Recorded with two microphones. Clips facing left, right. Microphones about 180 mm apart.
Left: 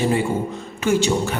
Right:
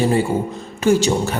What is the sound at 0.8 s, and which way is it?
Speech, 40° right (ahead or behind).